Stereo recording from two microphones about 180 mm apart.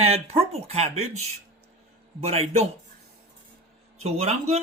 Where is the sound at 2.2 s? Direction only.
35° right (ahead or behind).